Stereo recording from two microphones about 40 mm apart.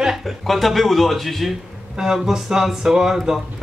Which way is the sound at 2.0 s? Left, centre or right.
Centre.